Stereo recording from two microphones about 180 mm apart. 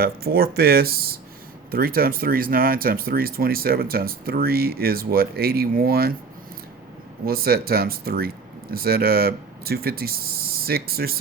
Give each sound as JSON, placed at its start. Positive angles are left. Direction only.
{"t": 0.0, "sound": "speech", "side_deg": -60}
{"t": 7.3, "sound": "speech", "side_deg": -55}